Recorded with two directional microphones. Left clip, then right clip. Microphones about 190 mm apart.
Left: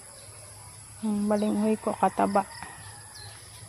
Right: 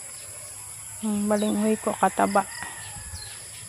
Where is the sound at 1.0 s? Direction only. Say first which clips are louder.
Right 2 dB; centre (ahead or behind).